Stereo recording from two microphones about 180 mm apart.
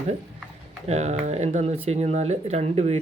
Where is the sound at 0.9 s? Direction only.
35° right (ahead or behind).